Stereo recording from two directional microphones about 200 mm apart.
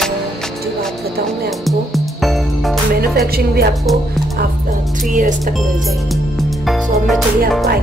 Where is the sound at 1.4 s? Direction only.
Centre (ahead or behind).